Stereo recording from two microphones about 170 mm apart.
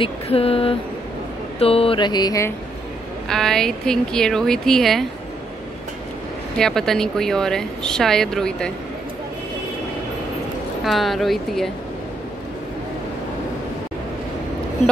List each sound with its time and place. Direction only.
0.0 s speech: 35° left (ahead or behind)
1.6 s mantra: 35° left (ahead or behind)
3.3 s speech: centre (ahead or behind)
6.6 s speech: centre (ahead or behind)
10.8 s speech: centre (ahead or behind)